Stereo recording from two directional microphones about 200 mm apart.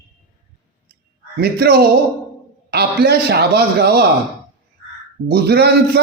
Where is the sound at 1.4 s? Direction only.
50° right (ahead or behind).